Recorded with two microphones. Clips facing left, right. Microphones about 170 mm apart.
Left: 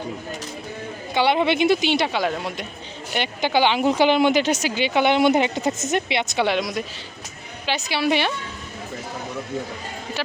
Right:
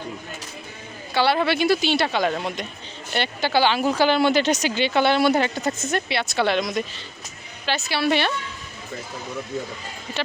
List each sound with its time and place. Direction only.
1.1 s speech: 20° left (ahead or behind)